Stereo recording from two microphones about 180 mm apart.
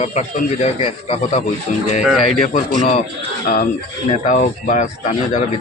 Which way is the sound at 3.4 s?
50° left (ahead or behind).